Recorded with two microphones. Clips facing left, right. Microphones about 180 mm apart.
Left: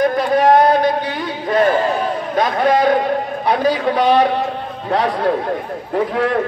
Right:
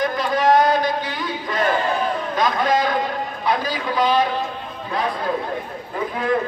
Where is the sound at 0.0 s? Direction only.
60° left (ahead or behind).